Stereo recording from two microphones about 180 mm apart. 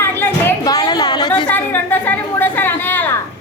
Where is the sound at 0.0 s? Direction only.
15° left (ahead or behind).